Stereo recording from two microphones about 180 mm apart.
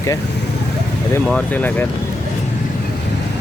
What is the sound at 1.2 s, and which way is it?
Speech, 5° left (ahead or behind).